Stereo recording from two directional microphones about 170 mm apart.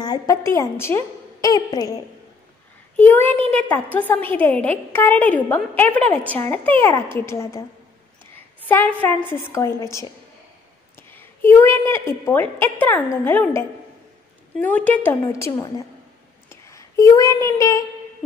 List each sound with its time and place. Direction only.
0.0 s a woman's voice: 20° left (ahead or behind)
3.0 s a woman's voice: 10° left (ahead or behind)
8.6 s a woman's voice: 10° left (ahead or behind)
11.0 s a sound: 10° left (ahead or behind)
12.3 s a woman's voice: 10° left (ahead or behind)
16.4 s a sound: 15° left (ahead or behind)